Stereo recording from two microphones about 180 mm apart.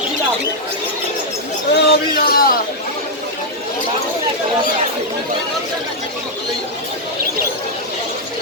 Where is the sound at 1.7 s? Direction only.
60° left (ahead or behind).